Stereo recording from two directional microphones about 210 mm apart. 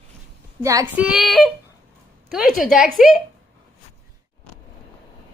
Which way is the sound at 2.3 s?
Centre (ahead or behind).